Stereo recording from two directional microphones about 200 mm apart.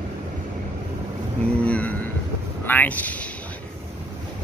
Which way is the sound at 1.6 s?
5° left (ahead or behind).